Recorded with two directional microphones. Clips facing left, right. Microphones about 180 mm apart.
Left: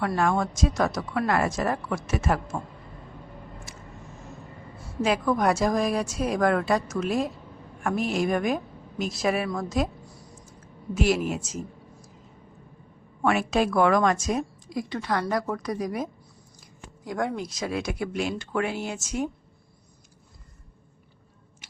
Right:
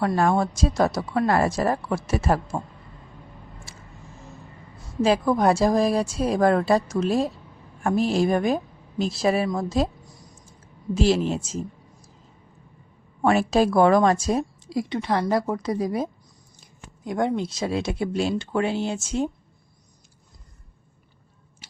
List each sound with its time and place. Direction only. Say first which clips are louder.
0.2 s speech: right 1 dB; 35° right (ahead or behind)
3.7 s a sound: left 2 dB; 30° right (ahead or behind)
5.0 s a woman's voice: right 4 dB; 30° right (ahead or behind)
10.9 s a woman's voice: right 3 dB; 30° right (ahead or behind)
13.2 s a woman's voice: right 4 dB; 35° right (ahead or behind)